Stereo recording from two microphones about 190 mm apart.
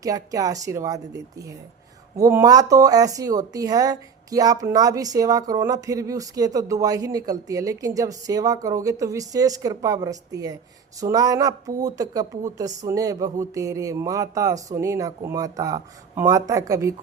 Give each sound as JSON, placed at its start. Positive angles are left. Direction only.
{"t": 0.0, "sound": "speech", "side_deg": -15}